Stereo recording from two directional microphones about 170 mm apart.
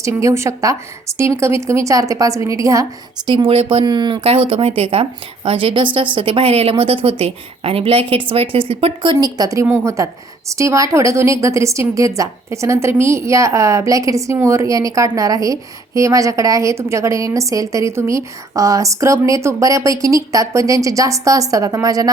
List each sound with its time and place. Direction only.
0.0 s a woman's voice: 15° right (ahead or behind)
3.2 s a woman's voice: 30° right (ahead or behind)
9.1 s a woman's voice: 20° right (ahead or behind)